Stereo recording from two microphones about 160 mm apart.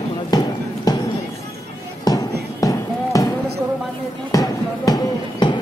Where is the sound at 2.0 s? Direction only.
25° left (ahead or behind).